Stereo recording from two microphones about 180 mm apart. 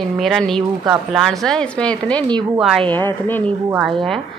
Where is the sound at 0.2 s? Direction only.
Centre (ahead or behind).